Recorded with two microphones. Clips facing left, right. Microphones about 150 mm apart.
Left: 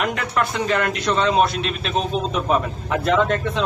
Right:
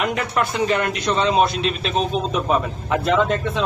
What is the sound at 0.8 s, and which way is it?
Speech, 20° right (ahead or behind).